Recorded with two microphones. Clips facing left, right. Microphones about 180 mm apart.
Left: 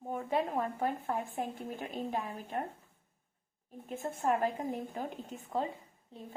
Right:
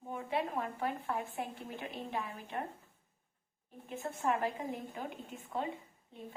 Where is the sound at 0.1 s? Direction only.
45° left (ahead or behind).